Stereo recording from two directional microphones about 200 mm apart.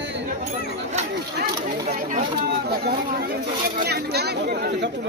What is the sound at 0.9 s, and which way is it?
Chatter, 45° right (ahead or behind).